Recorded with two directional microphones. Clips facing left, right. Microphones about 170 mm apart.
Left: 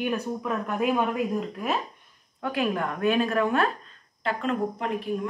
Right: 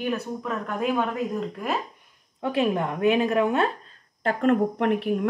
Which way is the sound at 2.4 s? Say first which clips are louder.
Right 3 dB; 25° right (ahead or behind).